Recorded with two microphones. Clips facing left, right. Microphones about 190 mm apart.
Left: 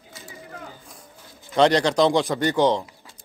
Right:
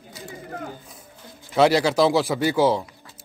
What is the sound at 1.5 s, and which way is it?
A man's voice, 5° right (ahead or behind).